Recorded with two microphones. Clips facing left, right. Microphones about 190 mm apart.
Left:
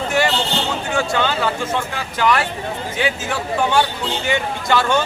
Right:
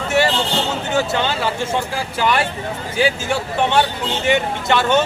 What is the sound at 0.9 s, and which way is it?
Speech, 25° right (ahead or behind).